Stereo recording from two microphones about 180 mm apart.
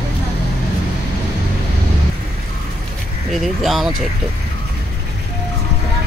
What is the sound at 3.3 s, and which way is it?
Speech, centre (ahead or behind).